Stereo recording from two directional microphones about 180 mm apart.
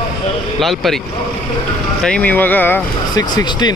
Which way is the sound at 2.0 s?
10° left (ahead or behind).